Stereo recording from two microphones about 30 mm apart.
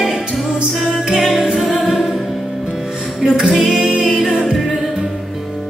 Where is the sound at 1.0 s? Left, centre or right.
Centre.